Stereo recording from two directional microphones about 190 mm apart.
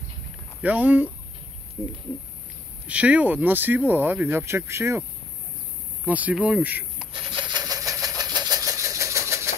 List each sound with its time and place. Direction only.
0.6 s speech: 10° right (ahead or behind)
2.9 s speech: 5° right (ahead or behind)
6.0 s speech: 10° right (ahead or behind)
7.1 s engine: 25° right (ahead or behind)